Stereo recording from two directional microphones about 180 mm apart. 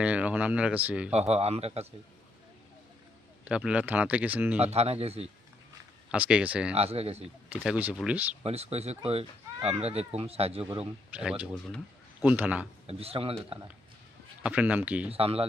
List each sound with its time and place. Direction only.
0.0 s speech: 5° right (ahead or behind)
1.1 s speech: 35° right (ahead or behind)
3.4 s speech: 5° right (ahead or behind)
4.6 s speech: 35° right (ahead or behind)
6.1 s speech: 5° right (ahead or behind)
6.7 s speech: 35° right (ahead or behind)
7.5 s speech: 5° right (ahead or behind)
8.4 s speech: 35° right (ahead or behind)
11.1 s speech: 5° right (ahead or behind)
12.9 s speech: 35° right (ahead or behind)
14.4 s speech: 10° right (ahead or behind)
15.1 s speech: 35° right (ahead or behind)